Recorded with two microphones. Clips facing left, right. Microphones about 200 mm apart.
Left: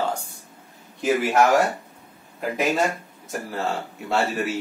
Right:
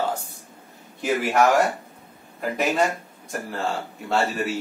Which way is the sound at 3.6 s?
Centre (ahead or behind).